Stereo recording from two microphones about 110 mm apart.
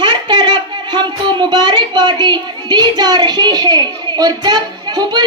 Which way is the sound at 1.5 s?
40° right (ahead or behind).